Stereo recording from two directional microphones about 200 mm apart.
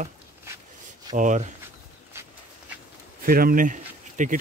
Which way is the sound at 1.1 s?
40° right (ahead or behind).